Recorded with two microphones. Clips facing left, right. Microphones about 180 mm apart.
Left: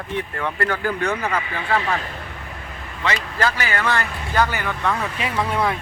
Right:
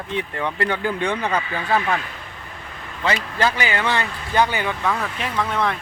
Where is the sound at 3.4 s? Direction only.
15° right (ahead or behind).